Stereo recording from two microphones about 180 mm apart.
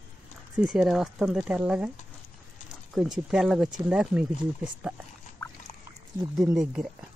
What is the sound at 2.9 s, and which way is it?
Speech, 5° right (ahead or behind).